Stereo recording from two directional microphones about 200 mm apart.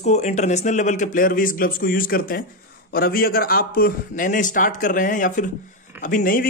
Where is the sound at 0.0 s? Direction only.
35° left (ahead or behind).